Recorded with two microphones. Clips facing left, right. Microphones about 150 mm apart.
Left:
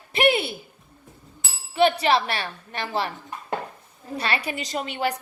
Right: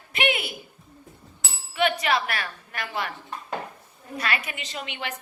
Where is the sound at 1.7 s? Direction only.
30° left (ahead or behind).